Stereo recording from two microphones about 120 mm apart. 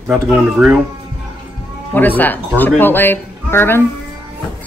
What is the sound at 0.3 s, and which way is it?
Speech, 10° right (ahead or behind).